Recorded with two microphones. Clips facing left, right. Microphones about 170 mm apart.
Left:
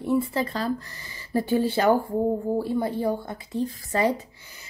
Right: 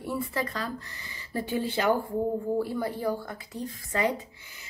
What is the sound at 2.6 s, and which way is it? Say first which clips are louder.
A woman's voice: left 4 dB; 25° left (ahead or behind).